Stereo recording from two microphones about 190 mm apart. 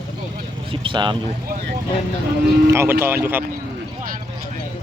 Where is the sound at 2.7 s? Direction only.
15° right (ahead or behind).